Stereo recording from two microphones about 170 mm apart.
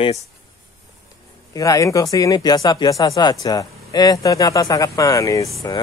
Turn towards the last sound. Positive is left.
turn(degrees=20)  # may be behind; listen again after turning